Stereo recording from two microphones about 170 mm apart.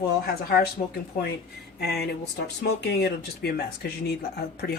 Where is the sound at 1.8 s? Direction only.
70° left (ahead or behind).